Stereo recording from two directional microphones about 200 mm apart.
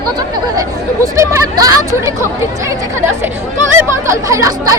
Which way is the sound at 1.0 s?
15° right (ahead or behind).